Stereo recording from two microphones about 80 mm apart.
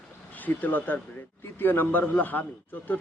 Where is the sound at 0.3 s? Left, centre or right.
Left.